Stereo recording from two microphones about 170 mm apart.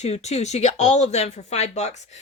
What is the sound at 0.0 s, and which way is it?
Speech, 40° left (ahead or behind).